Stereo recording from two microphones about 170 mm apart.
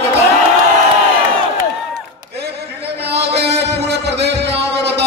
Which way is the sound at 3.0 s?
75° right (ahead or behind).